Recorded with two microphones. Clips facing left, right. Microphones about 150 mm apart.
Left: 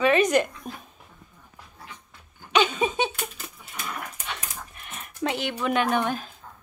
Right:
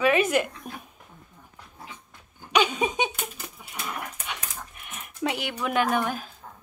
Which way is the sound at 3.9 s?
10° right (ahead or behind).